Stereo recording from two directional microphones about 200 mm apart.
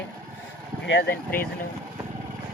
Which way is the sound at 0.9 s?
55° left (ahead or behind).